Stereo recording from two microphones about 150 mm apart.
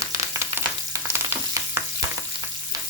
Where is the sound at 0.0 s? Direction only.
20° right (ahead or behind).